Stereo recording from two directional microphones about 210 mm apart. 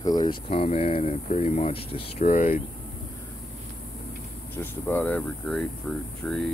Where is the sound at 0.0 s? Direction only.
20° left (ahead or behind).